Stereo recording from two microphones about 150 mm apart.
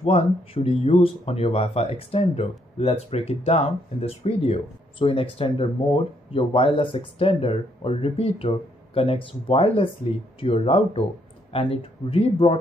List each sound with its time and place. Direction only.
0.0 s speech: 40° left (ahead or behind)